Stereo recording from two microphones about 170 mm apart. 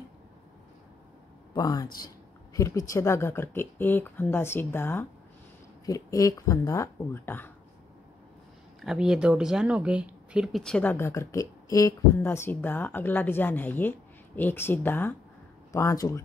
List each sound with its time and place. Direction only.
1.5 s speech: 20° left (ahead or behind)
8.8 s speech: 5° right (ahead or behind); by 16.2 s 20° left (ahead or behind)